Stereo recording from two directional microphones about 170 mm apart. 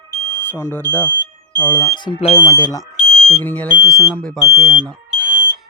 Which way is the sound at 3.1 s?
35° right (ahead or behind).